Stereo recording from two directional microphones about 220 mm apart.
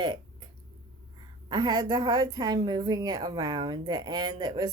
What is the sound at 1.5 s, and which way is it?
Speech, 20° right (ahead or behind).